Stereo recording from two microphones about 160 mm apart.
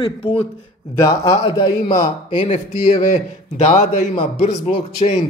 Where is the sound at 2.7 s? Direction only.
55° left (ahead or behind).